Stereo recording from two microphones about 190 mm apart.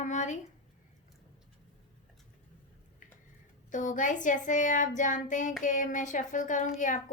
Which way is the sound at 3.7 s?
40° left (ahead or behind).